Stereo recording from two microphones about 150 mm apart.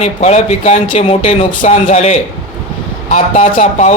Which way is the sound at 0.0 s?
45° left (ahead or behind).